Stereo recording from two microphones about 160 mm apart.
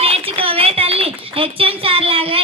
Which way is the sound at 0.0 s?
35° right (ahead or behind).